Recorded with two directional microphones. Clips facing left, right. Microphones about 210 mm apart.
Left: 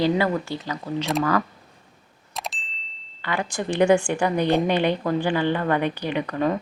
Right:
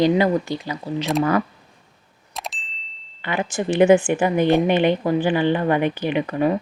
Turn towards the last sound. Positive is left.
turn(degrees=-15)  # may be behind; listen again after turning